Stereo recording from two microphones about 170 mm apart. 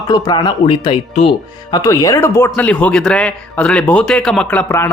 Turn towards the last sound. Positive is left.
turn(degrees=10)  # may be behind; listen again after turning